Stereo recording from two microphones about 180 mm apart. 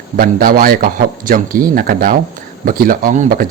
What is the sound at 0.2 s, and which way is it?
A man's voice, 55° right (ahead or behind).